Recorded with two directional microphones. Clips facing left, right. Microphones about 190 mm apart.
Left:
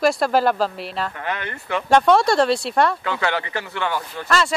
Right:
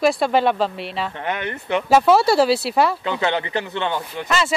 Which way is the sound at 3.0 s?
20° right (ahead or behind).